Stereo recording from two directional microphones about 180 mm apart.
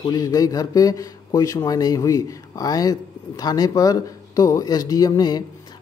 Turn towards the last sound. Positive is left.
turn(degrees=20)  # may be behind; listen again after turning